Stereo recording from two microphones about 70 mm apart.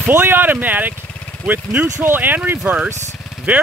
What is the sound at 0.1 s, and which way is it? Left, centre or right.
Speech, right.